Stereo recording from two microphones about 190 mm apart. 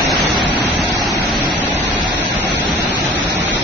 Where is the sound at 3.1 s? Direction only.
75° right (ahead or behind).